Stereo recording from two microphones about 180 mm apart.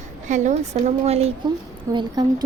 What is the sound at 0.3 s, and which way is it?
A woman's voice, 45° right (ahead or behind).